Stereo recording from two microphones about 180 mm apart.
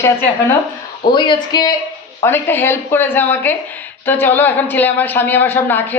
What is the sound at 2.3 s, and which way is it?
Speech, 10° left (ahead or behind).